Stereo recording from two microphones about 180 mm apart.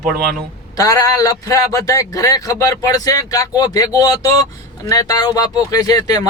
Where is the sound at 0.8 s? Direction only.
20° left (ahead or behind).